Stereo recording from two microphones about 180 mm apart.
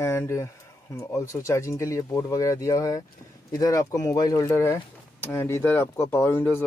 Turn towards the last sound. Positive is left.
turn(degrees=15)  # may be behind; listen again after turning